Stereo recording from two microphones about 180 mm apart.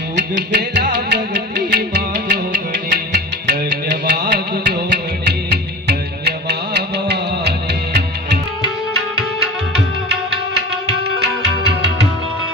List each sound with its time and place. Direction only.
0.2 s music: 75° right (ahead or behind)